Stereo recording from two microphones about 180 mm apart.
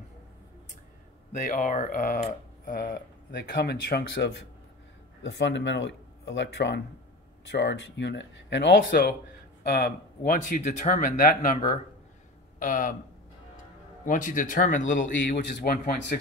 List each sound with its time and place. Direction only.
1.3 s speech: 45° left (ahead or behind)
3.5 s speech: 70° left (ahead or behind)
5.2 s speech: 85° left; by 12.9 s 45° left (ahead or behind)
14.0 s speech: 45° left (ahead or behind)
15.2 s speech: 60° left (ahead or behind)